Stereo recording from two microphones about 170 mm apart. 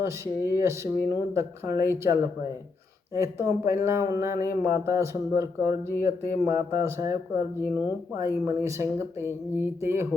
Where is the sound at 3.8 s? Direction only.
15° right (ahead or behind).